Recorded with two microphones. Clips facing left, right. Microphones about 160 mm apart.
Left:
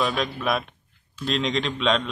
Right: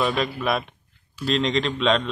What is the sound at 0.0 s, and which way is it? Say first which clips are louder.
Speech: right 2 dB; centre (ahead or behind).